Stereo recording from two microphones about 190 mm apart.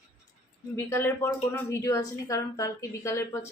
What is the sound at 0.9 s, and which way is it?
Speech, 15° left (ahead or behind).